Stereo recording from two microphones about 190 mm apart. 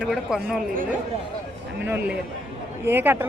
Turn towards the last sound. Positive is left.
turn(degrees=-10)  # may be behind; listen again after turning